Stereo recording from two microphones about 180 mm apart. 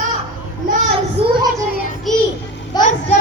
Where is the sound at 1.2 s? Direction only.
35° right (ahead or behind).